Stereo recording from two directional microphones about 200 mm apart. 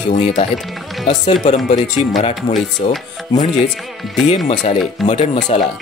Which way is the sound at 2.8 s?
35° left (ahead or behind).